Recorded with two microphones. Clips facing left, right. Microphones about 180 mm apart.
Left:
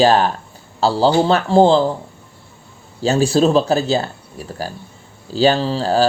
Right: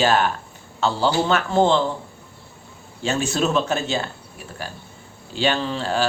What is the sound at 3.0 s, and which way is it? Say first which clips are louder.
Speech: left 8 dB; 35° left (ahead or behind).